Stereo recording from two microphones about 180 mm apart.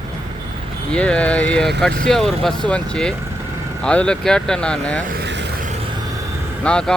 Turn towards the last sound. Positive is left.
turn(degrees=5)  # may be behind; listen again after turning